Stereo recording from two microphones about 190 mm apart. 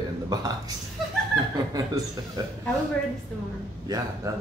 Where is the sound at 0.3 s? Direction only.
20° right (ahead or behind).